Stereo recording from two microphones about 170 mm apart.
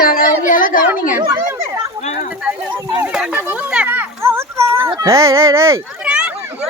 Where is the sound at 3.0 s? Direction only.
5° right (ahead or behind).